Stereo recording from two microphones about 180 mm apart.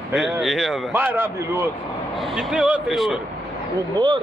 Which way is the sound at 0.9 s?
10° right (ahead or behind).